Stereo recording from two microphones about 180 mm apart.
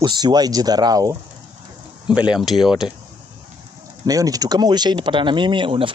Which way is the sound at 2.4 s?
Centre (ahead or behind).